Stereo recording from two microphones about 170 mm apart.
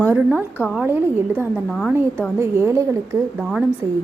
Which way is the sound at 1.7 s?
Centre (ahead or behind).